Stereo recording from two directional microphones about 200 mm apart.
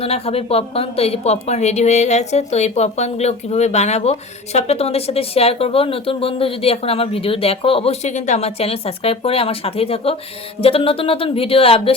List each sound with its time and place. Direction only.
0.0 s a woman's voice: 30° left (ahead or behind)